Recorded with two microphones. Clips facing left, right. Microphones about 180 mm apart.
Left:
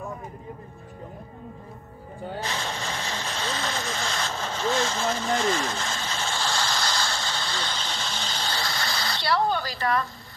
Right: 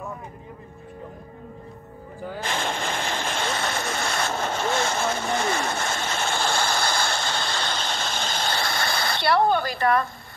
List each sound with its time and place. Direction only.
2.4 s vehicle: 50° right (ahead or behind)